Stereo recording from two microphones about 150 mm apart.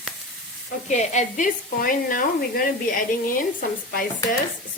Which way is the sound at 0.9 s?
50° left (ahead or behind).